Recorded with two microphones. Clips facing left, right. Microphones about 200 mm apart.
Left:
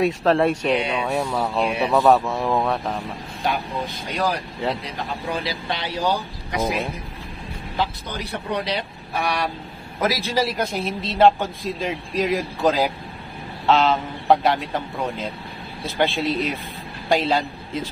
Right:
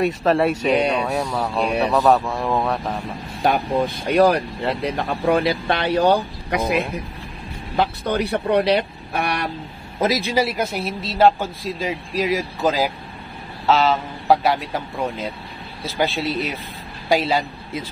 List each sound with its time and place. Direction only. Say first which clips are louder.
0.0 s a man's voice: even; 5° right (ahead or behind)
1.0 s a man's voice: even; 5° left (ahead or behind)
4.1 s speech: right 9 dB; 60° right (ahead or behind)
9.9 s a man's voice: right 3 dB; 20° right (ahead or behind)
10.3 s a man's voice: right 2 dB; 10° right (ahead or behind)